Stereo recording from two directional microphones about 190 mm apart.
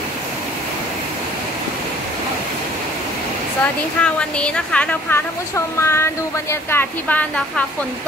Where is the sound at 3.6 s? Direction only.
5° left (ahead or behind).